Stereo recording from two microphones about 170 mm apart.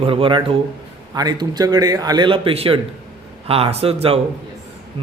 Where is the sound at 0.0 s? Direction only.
30° right (ahead or behind).